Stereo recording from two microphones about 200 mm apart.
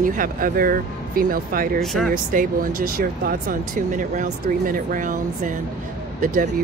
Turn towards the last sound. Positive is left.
turn(degrees=-40)  # may be behind; listen again after turning